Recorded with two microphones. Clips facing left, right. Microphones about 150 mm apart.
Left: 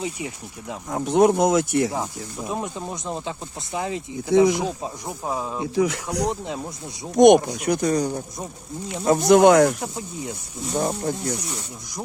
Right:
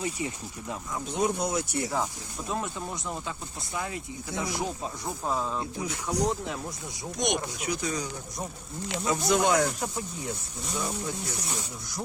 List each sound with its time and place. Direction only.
0.9 s speech: 65° left (ahead or behind); by 1.9 s 90° left
2.5 s speech: 20° left (ahead or behind)
4.3 s speech: 90° left
4.5 s speech: 20° left (ahead or behind)
5.7 s speech: 85° left
7.2 s speech: 60° left (ahead or behind)
10.8 s speech: 55° left (ahead or behind)